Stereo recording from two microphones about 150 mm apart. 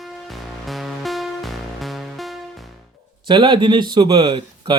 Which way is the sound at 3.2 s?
30° right (ahead or behind).